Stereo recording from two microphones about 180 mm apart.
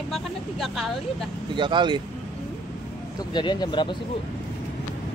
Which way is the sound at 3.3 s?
25° left (ahead or behind).